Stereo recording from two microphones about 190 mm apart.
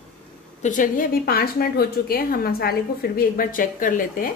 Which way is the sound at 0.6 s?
45° left (ahead or behind).